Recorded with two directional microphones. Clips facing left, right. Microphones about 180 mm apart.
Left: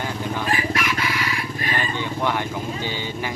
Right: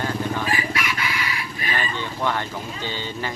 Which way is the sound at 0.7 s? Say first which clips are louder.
Left 3 dB; 50° left (ahead or behind).